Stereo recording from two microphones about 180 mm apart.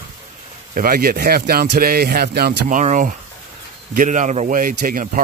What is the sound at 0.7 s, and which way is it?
Speech, 50° right (ahead or behind).